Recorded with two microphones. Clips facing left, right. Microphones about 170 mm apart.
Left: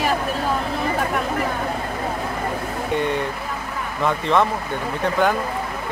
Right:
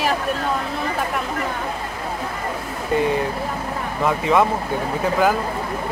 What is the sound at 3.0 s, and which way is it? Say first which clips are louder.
Speech: right 5 dB; centre (ahead or behind).